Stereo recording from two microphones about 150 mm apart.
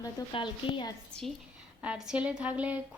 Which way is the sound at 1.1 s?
5° left (ahead or behind).